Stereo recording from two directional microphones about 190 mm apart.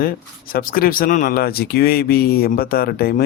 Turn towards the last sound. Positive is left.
turn(degrees=55)  # may be behind; listen again after turning